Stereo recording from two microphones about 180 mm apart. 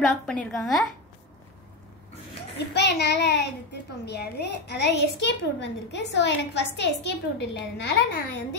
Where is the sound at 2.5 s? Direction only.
70° left (ahead or behind).